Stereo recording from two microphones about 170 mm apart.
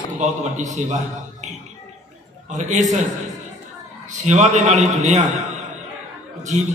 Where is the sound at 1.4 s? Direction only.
45° right (ahead or behind).